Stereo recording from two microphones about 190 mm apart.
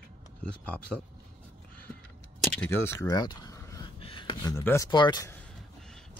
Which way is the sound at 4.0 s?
25° left (ahead or behind).